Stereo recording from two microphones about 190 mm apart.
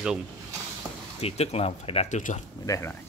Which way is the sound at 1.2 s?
35° left (ahead or behind).